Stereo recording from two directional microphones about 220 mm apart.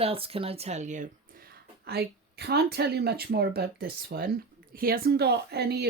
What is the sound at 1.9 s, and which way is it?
Speech, 45° right (ahead or behind).